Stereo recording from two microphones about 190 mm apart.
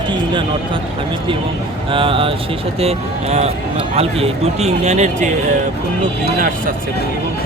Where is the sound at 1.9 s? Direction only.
30° right (ahead or behind).